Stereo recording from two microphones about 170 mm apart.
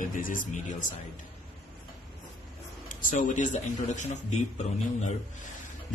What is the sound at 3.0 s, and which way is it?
Speech, 50° left (ahead or behind).